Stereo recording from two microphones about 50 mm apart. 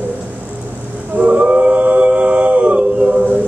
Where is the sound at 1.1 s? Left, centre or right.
Right.